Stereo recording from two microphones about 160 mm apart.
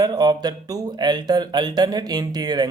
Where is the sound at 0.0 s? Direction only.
25° right (ahead or behind).